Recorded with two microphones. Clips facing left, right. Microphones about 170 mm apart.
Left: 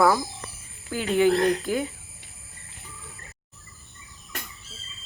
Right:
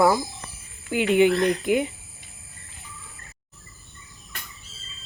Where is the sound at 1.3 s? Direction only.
50° left (ahead or behind).